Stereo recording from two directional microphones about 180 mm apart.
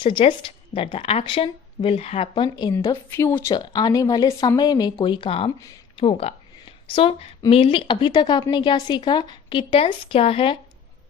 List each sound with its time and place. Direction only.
0.0 s a woman's voice: 30° left (ahead or behind)